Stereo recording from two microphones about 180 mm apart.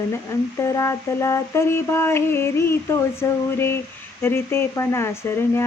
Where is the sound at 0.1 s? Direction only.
15° left (ahead or behind).